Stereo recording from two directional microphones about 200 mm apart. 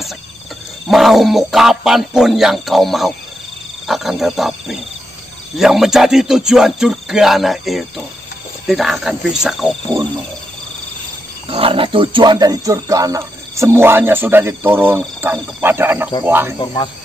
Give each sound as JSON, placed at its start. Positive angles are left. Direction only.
{"t": 0.8, "sound": "speech", "side_deg": 0}
{"t": 11.4, "sound": "speech", "side_deg": -30}
{"t": 16.5, "sound": "speech", "side_deg": 25}